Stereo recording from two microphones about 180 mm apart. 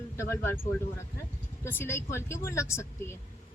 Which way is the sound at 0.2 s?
15° left (ahead or behind).